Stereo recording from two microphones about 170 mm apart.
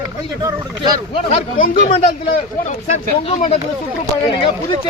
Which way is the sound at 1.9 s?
35° left (ahead or behind).